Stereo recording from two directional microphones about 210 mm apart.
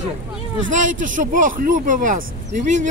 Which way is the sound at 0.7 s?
40° right (ahead or behind).